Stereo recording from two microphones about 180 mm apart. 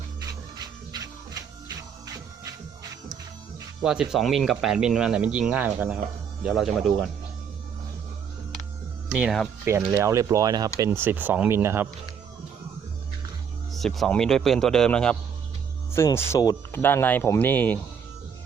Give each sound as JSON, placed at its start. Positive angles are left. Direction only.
{"t": 0.2, "sound": "music", "side_deg": -20}
{"t": 3.8, "sound": "speech", "side_deg": -5}
{"t": 9.1, "sound": "speech", "side_deg": -5}
{"t": 13.7, "sound": "speech", "side_deg": 0}